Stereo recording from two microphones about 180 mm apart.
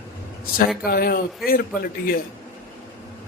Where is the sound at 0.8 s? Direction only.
55° left (ahead or behind).